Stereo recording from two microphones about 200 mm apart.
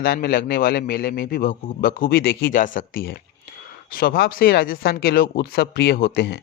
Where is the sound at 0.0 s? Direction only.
50° left (ahead or behind).